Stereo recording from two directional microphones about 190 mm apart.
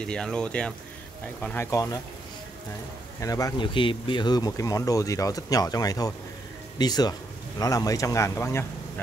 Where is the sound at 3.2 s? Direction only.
20° left (ahead or behind).